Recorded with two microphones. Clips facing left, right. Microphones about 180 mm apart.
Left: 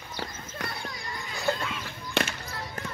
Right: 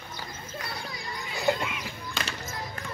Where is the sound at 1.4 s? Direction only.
15° right (ahead or behind).